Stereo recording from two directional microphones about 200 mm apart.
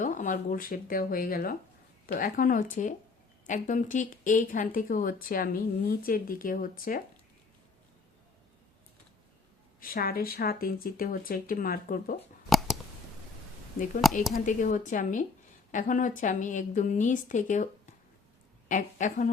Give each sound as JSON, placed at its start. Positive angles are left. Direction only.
{"t": 0.0, "sound": "speech", "side_deg": 40}
{"t": 9.8, "sound": "speech", "side_deg": 45}
{"t": 12.5, "sound": "a sound", "side_deg": 0}
{"t": 14.0, "sound": "speech", "side_deg": 0}
{"t": 14.3, "sound": "a woman's voice", "side_deg": 40}
{"t": 18.7, "sound": "a woman's voice", "side_deg": 40}